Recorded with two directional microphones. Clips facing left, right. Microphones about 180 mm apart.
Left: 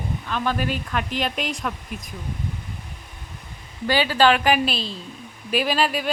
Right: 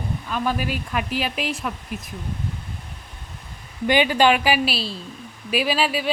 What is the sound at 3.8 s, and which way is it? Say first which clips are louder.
A woman's voice: right 1 dB; 15° right (ahead or behind).